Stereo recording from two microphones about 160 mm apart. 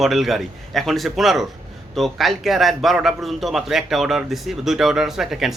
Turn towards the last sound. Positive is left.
turn(degrees=0)  # may be behind; listen again after turning